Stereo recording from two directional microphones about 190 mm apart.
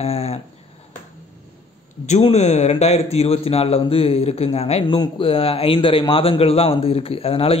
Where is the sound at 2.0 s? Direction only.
35° left (ahead or behind).